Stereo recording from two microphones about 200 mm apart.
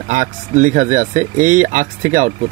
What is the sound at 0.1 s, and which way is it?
Speech, 40° right (ahead or behind).